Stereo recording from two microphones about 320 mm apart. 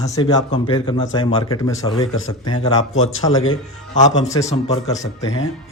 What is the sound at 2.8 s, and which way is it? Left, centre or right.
Speech, left.